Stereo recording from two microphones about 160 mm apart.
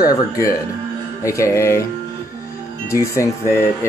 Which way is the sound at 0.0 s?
25° left (ahead or behind).